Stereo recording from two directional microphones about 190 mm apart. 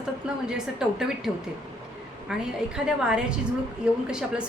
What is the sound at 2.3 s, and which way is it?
A woman's voice, 5° right (ahead or behind).